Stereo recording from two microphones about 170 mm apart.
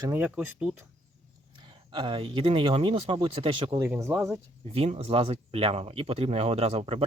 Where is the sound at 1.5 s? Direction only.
30° right (ahead or behind).